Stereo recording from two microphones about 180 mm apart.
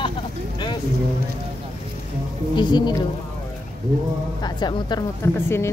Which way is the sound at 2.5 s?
25° left (ahead or behind).